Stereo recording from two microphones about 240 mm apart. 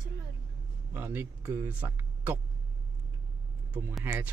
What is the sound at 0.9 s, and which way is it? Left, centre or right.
Speech, centre.